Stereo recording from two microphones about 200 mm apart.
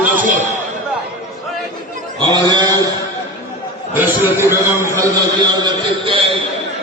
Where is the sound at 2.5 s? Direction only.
20° right (ahead or behind).